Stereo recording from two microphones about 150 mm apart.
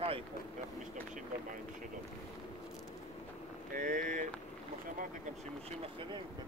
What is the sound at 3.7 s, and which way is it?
Speech, 65° right (ahead or behind).